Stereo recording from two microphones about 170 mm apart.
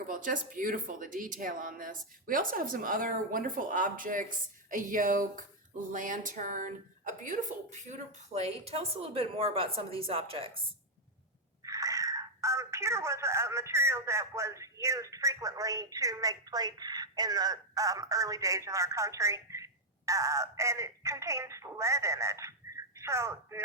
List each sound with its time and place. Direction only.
0.1 s speech: 50° right (ahead or behind); by 10.6 s 30° right (ahead or behind)
11.6 s speech: 20° right (ahead or behind)